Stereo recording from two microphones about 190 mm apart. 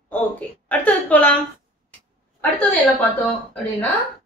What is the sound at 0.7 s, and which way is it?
Speech, 5° left (ahead or behind).